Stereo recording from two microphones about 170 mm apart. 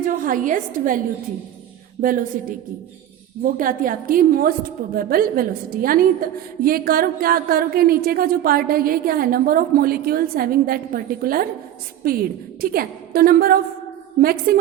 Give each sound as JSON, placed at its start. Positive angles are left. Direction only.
{"t": 0.0, "sound": "a woman's voice", "side_deg": -50}